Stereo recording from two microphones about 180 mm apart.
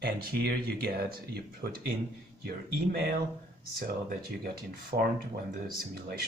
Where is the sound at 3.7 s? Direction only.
55° right (ahead or behind).